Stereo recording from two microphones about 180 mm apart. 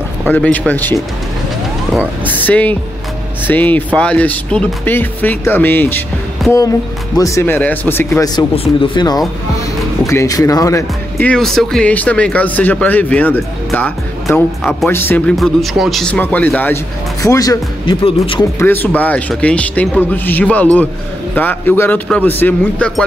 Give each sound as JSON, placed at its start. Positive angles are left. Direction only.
{"t": 0.2, "sound": "speech", "side_deg": 10}
{"t": 2.2, "sound": "speech", "side_deg": 10}
{"t": 7.2, "sound": "speech", "side_deg": 15}
{"t": 8.5, "sound": "speech", "side_deg": 30}
{"t": 18.6, "sound": "speech", "side_deg": 10}